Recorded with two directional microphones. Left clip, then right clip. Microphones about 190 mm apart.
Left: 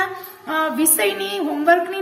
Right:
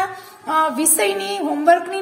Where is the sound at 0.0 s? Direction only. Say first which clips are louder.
Even; 40° right (ahead or behind).